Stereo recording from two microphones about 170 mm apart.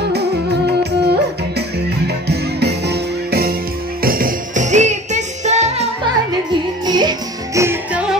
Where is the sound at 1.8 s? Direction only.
75° right (ahead or behind); by 5.8 s 40° right (ahead or behind).